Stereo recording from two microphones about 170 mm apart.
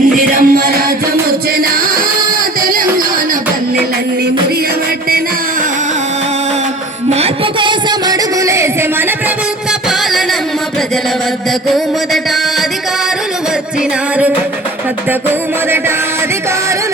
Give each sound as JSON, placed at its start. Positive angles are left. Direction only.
{"t": 0.3, "sound": "music", "side_deg": -60}
{"t": 7.1, "sound": "music", "side_deg": -35}